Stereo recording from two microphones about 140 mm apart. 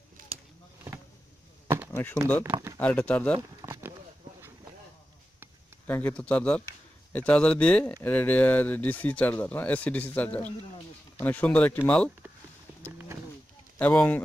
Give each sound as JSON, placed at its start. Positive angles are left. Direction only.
{"t": 1.9, "sound": "chop", "side_deg": 15}
{"t": 2.8, "sound": "speech", "side_deg": 10}
{"t": 3.6, "sound": "a sound", "side_deg": -20}
{"t": 5.9, "sound": "speech", "side_deg": 10}
{"t": 12.8, "sound": "livestock", "side_deg": -15}
{"t": 13.7, "sound": "speech", "side_deg": 10}